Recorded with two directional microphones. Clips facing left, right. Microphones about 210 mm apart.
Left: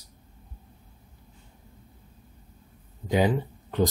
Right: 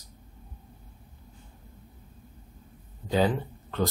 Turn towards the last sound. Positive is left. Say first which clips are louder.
# left 3 dB
turn(degrees=15)  # may be behind; listen again after turning